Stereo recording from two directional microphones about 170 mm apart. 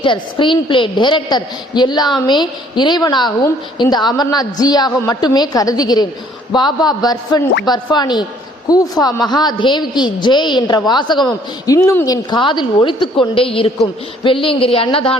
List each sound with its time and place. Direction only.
0.0 s a woman's voice: 30° left (ahead or behind)